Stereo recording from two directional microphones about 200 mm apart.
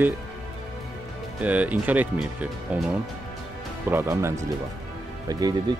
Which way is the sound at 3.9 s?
10° right (ahead or behind).